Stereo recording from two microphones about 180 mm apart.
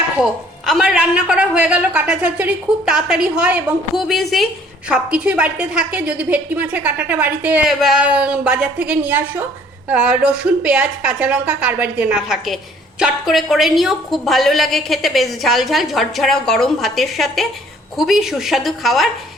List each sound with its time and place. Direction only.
0.2 s a woman's voice: centre (ahead or behind)